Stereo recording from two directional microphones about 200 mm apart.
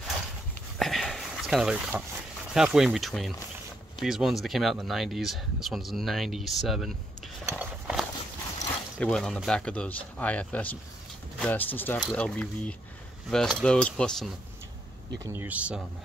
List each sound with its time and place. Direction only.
0.7 s a sound: centre (ahead or behind)
2.5 s speech: centre (ahead or behind)
7.4 s walk: 5° right (ahead or behind)
9.0 s speech: 5° left (ahead or behind)
15.2 s speech: 10° right (ahead or behind)